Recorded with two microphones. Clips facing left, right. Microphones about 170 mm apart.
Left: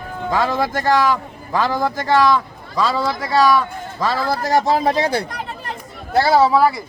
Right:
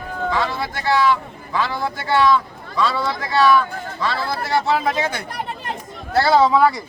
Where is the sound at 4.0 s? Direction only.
40° left (ahead or behind).